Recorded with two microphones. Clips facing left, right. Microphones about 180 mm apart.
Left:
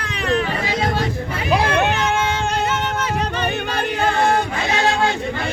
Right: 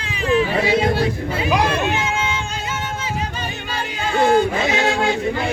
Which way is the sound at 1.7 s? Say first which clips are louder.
Left 2 dB; 65° left (ahead or behind).